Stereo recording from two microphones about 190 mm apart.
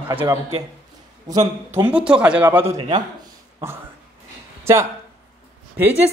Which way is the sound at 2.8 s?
25° right (ahead or behind).